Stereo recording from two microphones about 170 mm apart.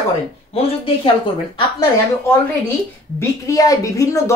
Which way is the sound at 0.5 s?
35° left (ahead or behind).